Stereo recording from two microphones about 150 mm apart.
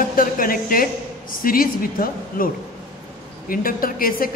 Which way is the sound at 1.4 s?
70° left (ahead or behind).